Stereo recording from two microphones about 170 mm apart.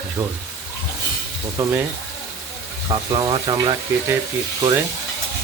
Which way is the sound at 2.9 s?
30° right (ahead or behind).